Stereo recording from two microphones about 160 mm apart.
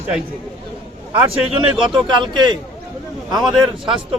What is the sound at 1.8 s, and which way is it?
Speech, 30° right (ahead or behind).